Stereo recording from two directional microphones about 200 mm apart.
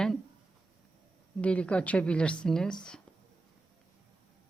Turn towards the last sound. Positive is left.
turn(degrees=5)  # may be behind; listen again after turning